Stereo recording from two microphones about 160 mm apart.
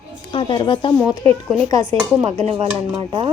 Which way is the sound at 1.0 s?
20° left (ahead or behind).